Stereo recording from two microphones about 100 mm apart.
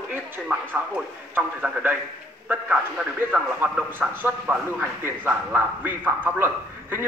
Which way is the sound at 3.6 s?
20° right (ahead or behind).